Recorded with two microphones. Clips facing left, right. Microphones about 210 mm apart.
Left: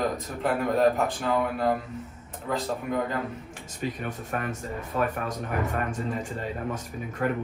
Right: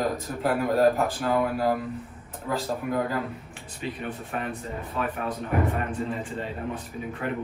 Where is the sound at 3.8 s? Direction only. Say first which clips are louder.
Left 1 dB; 45° left (ahead or behind).